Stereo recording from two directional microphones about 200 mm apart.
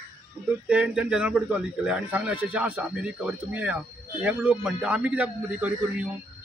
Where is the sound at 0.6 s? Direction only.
5° right (ahead or behind).